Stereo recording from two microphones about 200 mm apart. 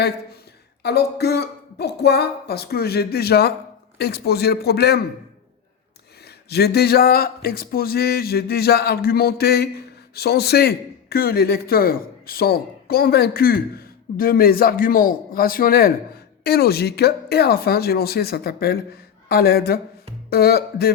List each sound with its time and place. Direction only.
0.8 s speech: 55° left (ahead or behind)
6.2 s speech: 55° left (ahead or behind)